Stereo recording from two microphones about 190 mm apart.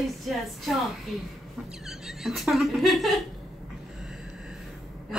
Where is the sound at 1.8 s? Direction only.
Centre (ahead or behind).